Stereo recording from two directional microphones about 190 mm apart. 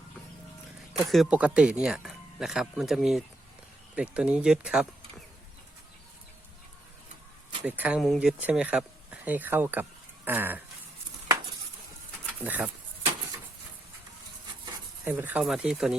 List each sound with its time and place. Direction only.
1.1 s speech: 5° right (ahead or behind)
7.6 s speech: 5° right (ahead or behind)
12.4 s speech: 10° right (ahead or behind)
15.0 s speech: 10° right (ahead or behind)